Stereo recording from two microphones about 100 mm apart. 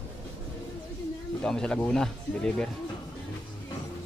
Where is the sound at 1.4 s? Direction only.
5° left (ahead or behind).